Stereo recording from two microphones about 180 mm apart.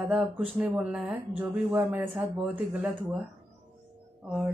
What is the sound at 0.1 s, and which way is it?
Speech, 5° right (ahead or behind).